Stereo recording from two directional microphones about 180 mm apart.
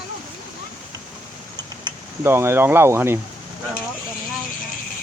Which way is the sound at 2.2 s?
15° right (ahead or behind).